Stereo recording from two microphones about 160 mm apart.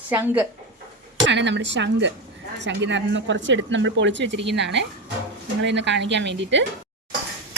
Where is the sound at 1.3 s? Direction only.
90° right.